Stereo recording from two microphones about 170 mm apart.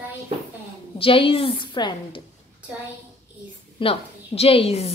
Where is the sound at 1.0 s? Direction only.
30° left (ahead or behind).